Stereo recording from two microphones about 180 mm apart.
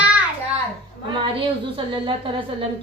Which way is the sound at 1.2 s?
25° right (ahead or behind).